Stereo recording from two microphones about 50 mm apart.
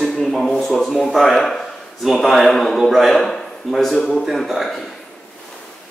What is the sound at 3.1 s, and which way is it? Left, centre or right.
Speech, centre.